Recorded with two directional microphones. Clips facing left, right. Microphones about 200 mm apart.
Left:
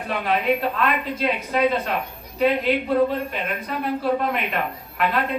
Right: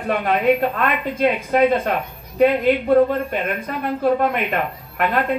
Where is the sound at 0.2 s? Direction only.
50° right (ahead or behind).